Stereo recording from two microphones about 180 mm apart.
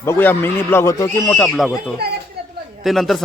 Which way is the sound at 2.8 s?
Centre (ahead or behind).